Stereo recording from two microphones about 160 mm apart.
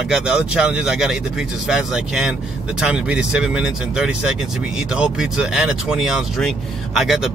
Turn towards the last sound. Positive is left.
turn(degrees=0)  # may be behind; listen again after turning